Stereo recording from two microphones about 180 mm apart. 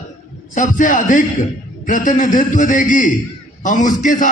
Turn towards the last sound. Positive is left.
turn(degrees=45)  # may be behind; listen again after turning